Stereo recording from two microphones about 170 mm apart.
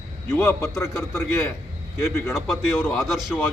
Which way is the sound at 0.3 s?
15° left (ahead or behind).